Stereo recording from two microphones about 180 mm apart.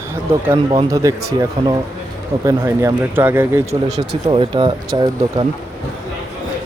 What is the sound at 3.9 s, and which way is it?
Speech, 35° right (ahead or behind).